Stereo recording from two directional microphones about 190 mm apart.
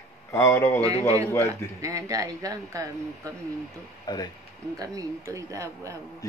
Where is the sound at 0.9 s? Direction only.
35° left (ahead or behind).